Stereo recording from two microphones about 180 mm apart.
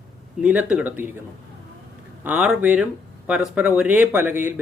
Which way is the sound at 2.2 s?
10° right (ahead or behind).